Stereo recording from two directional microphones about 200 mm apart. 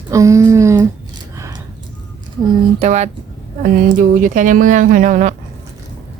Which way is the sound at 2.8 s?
35° right (ahead or behind).